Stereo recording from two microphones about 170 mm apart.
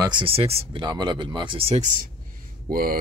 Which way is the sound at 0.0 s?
30° right (ahead or behind).